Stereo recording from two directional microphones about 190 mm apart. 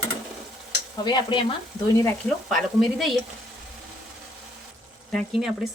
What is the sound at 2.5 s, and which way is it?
Speech, centre (ahead or behind).